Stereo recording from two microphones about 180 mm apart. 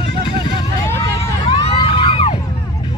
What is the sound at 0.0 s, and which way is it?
Vehicle, 25° left (ahead or behind).